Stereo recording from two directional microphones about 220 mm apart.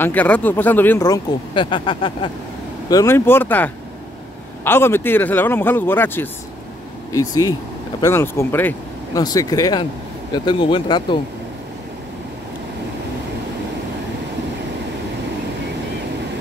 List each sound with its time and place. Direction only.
0.0 s speech: 10° left (ahead or behind)